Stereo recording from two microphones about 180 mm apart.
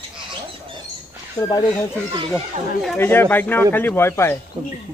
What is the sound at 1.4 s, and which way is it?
Speech, 25° left (ahead or behind).